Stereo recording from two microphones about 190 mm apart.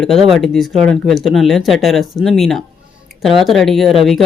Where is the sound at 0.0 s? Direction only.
Centre (ahead or behind).